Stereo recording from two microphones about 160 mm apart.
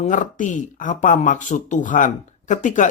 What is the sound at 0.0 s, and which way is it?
Speech, 50° left (ahead or behind).